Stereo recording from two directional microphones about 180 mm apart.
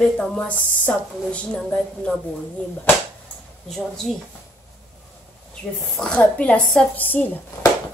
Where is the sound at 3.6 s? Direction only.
Centre (ahead or behind).